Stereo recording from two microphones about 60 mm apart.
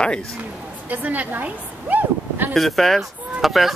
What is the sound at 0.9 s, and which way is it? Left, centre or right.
A woman's voice, right.